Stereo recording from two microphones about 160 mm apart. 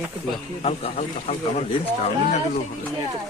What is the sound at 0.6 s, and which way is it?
Speech, 40° left (ahead or behind).